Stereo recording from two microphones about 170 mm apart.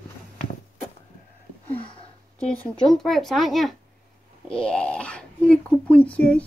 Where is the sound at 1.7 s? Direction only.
35° left (ahead or behind).